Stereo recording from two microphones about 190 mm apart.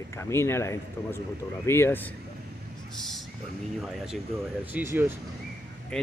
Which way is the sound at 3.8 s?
5° right (ahead or behind).